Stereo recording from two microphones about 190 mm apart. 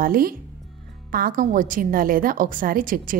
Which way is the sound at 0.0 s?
50° right (ahead or behind).